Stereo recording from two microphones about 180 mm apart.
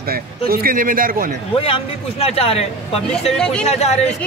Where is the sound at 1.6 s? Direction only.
35° left (ahead or behind).